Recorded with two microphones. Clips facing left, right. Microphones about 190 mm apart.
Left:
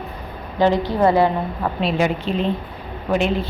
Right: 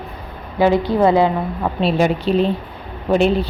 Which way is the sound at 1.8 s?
35° right (ahead or behind).